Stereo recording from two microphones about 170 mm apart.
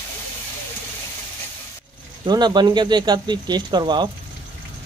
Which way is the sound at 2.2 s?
25° right (ahead or behind).